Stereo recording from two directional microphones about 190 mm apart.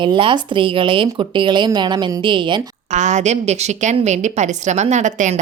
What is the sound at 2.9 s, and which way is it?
A woman's voice, 40° right (ahead or behind).